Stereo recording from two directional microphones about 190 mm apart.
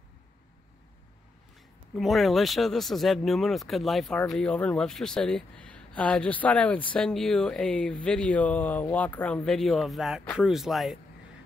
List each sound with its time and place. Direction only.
2.0 s speech: centre (ahead or behind)